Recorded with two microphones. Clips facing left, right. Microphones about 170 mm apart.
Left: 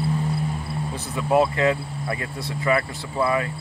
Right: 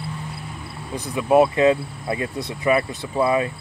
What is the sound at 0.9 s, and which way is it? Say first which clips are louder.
Speech: right 4 dB; 15° right (ahead or behind).